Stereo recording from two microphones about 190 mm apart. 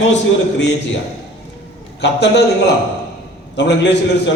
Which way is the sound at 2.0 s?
65° left (ahead or behind).